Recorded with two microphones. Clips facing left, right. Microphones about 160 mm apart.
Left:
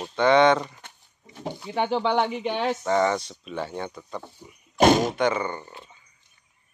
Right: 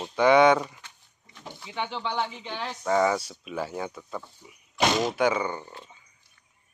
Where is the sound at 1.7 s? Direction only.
50° left (ahead or behind).